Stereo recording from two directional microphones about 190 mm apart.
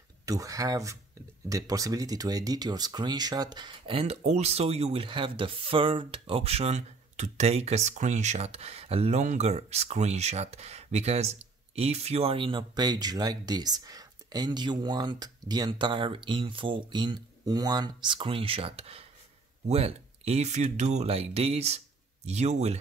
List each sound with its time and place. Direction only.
0.2 s speech: 15° right (ahead or behind); by 22.8 s 35° right (ahead or behind)